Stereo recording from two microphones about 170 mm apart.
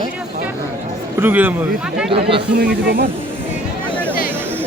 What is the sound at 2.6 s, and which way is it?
Speech, 65° right (ahead or behind).